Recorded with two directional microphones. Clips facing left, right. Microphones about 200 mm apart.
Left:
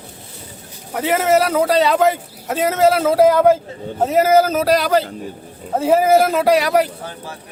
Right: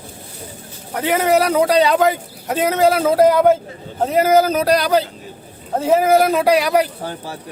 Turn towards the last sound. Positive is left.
turn(degrees=-30)  # may be behind; listen again after turning